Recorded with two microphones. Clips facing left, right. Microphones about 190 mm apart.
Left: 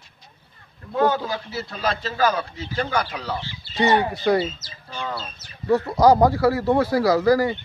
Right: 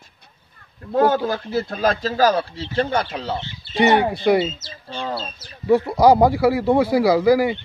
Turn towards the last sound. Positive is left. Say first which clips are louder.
# right 2 dB
turn(degrees=-10)  # may be behind; listen again after turning